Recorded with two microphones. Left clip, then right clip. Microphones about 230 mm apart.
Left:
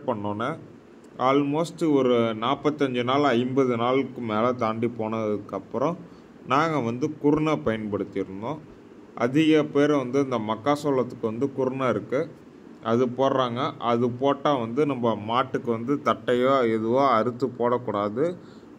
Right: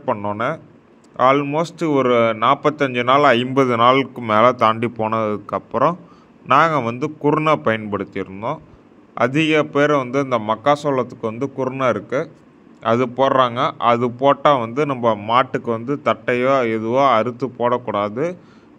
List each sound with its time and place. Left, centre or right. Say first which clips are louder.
0.0 s a man's voice: right 7 dB; centre
16.0 s a man's voice: right 5 dB; right
17.3 s a man's voice: right 5 dB; right